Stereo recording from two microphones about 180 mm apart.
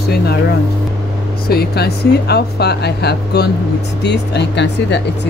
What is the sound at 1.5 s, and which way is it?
Speech, 60° left (ahead or behind).